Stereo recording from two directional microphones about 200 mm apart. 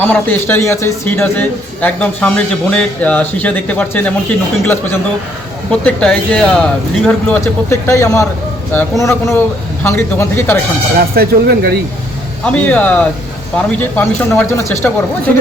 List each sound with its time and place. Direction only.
0.0 s a man's voice: 10° left (ahead or behind)
7.4 s a man's voice: 15° left (ahead or behind)
11.1 s speech: 50° right (ahead or behind)
12.5 s a man's voice: 5° left (ahead or behind)